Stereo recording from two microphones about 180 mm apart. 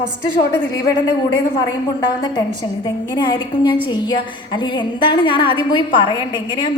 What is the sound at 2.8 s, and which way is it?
A woman's voice, 25° left (ahead or behind).